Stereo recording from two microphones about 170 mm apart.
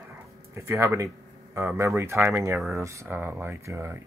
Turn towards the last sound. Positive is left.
turn(degrees=-15)  # may be behind; listen again after turning